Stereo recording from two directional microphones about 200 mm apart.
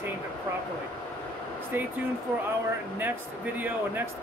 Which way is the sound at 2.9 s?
10° right (ahead or behind).